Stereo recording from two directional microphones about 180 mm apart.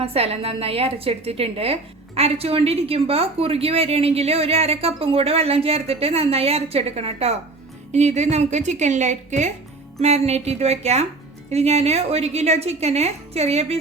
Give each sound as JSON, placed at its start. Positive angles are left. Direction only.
{"t": 0.0, "sound": "a woman's voice", "side_deg": -35}